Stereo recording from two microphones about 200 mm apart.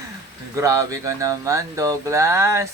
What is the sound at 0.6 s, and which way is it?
Speech, 15° right (ahead or behind).